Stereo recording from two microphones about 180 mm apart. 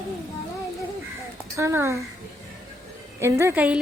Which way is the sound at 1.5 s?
15° right (ahead or behind).